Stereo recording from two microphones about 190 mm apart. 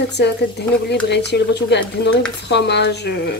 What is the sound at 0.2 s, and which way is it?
Speech, 60° left (ahead or behind).